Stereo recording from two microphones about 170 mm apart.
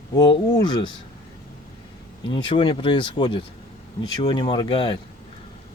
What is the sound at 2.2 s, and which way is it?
Speech, 30° left (ahead or behind).